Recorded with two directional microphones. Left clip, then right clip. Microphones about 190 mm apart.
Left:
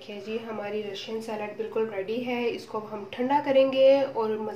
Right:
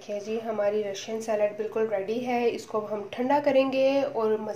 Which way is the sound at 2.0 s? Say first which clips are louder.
Right 2 dB; 35° right (ahead or behind).